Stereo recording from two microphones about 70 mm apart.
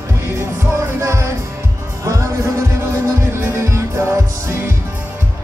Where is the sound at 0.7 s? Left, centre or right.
Right.